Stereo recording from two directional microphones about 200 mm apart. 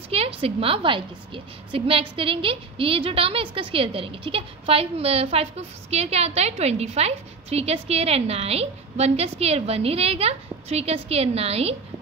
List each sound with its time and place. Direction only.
0.1 s a woman's voice: 30° right (ahead or behind)